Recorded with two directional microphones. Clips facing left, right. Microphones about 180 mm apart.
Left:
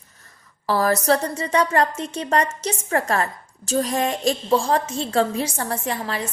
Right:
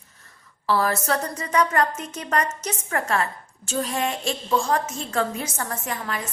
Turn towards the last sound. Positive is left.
turn(degrees=30)  # may be behind; listen again after turning